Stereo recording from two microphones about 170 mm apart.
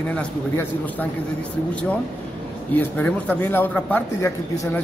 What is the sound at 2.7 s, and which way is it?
A man's voice, 10° left (ahead or behind).